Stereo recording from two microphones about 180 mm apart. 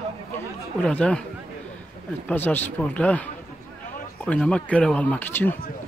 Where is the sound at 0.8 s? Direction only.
5° left (ahead or behind).